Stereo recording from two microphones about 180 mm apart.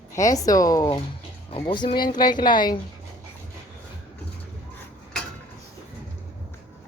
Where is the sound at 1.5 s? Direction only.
30° left (ahead or behind).